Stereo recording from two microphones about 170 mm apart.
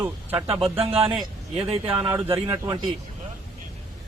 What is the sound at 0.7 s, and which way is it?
Speech, 35° right (ahead or behind).